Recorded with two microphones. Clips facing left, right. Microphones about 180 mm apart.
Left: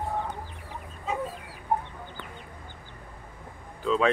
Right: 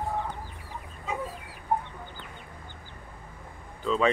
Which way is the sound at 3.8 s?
Centre (ahead or behind).